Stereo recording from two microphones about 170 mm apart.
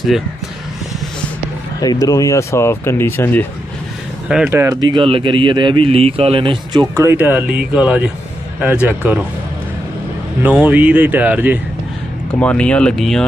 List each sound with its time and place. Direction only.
1.8 s speech: 20° left (ahead or behind)
4.5 s speech: 15° right (ahead or behind)
7.0 s speech: 10° right (ahead or behind)
10.4 s speech: 10° right (ahead or behind)
12.4 s speech: 5° left (ahead or behind)